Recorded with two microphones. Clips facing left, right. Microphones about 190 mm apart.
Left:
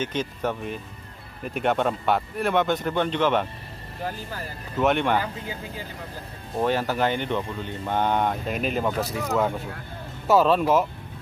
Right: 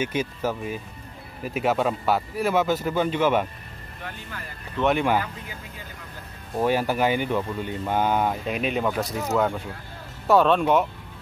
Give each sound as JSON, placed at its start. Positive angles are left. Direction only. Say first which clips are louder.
{"t": 0.0, "sound": "speech", "louder": "right 1 dB", "side_deg": -10}
{"t": 4.0, "sound": "speech", "louder": "left 6 dB", "side_deg": 35}
{"t": 4.7, "sound": "speech", "louder": "even", "side_deg": 0}
{"t": 5.2, "sound": "speech", "louder": "left 4 dB", "side_deg": 30}
{"t": 6.6, "sound": "speech", "louder": "right 1 dB", "side_deg": -10}